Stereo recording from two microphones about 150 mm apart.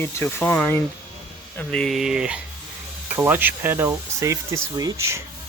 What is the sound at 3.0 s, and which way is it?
Speech, 15° right (ahead or behind).